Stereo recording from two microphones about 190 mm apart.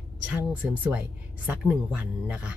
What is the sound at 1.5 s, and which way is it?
Speech, 5° right (ahead or behind).